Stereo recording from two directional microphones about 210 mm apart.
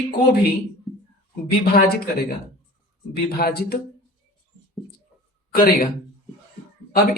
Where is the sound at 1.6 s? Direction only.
45° left (ahead or behind).